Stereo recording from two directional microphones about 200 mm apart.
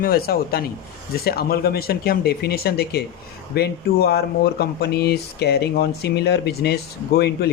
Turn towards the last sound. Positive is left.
turn(degrees=55)  # may be behind; listen again after turning